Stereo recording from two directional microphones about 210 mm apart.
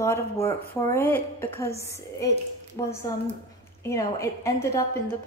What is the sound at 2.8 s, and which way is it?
A woman's voice, 20° left (ahead or behind).